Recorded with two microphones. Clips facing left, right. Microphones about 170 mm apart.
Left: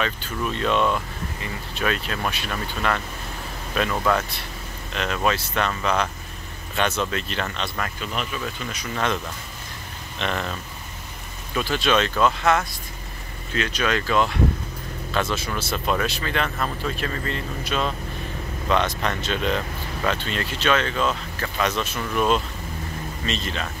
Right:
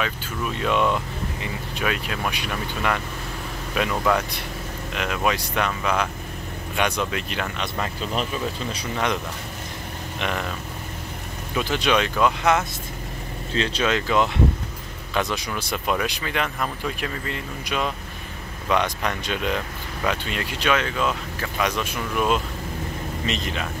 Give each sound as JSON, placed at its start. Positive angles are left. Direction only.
{"t": 0.0, "sound": "speech", "side_deg": -10}
{"t": 8.0, "sound": "speech", "side_deg": -35}
{"t": 8.9, "sound": "speech", "side_deg": -15}
{"t": 11.5, "sound": "speech", "side_deg": -20}
{"t": 13.6, "sound": "speech", "side_deg": -30}